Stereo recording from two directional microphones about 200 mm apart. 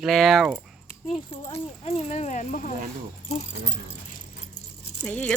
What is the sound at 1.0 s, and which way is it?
Speech, 30° left (ahead or behind).